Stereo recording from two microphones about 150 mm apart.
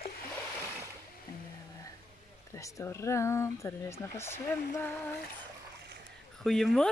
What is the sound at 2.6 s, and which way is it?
Speech, 20° left (ahead or behind).